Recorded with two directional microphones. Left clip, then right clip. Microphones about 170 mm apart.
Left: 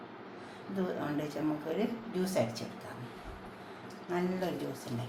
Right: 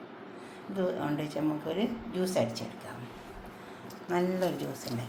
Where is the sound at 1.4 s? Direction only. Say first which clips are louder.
Right 3 dB; 35° right (ahead or behind).